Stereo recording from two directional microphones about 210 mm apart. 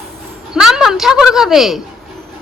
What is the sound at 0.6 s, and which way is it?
Speech, centre (ahead or behind).